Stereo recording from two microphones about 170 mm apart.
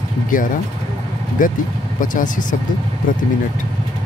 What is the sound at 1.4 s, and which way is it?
Speech, 50° left (ahead or behind).